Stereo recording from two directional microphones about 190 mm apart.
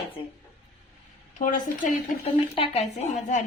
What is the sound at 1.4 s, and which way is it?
Speech, 45° left (ahead or behind).